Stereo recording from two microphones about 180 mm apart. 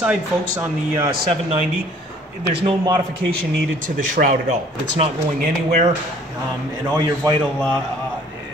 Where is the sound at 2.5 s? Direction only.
30° right (ahead or behind).